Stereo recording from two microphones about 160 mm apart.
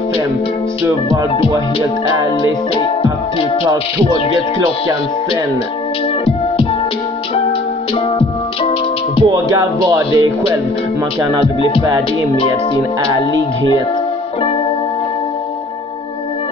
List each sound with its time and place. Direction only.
1.5 s music: 20° right (ahead or behind)
2.4 s music: 30° left (ahead or behind)
8.2 s music: 35° left (ahead or behind)
9.3 s music: 20° right (ahead or behind)
11.4 s music: 35° left (ahead or behind)